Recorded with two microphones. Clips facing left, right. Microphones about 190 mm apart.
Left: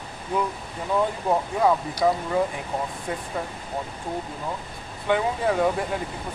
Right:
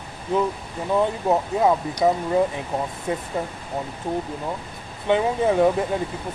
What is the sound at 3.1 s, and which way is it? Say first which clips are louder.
Speech: right 6 dB; 20° right (ahead or behind).